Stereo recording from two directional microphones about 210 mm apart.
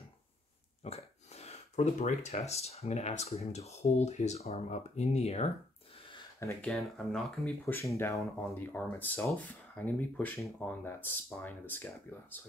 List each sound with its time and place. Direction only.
0.8 s speech: 30° left (ahead or behind)
6.0 s a sound: 20° left (ahead or behind)
6.7 s speech: 5° left (ahead or behind)